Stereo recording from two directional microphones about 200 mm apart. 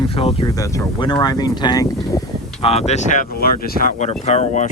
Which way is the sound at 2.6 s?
30° left (ahead or behind).